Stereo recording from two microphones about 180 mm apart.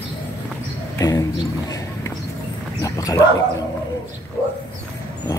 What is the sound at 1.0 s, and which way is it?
Speech, 20° left (ahead or behind).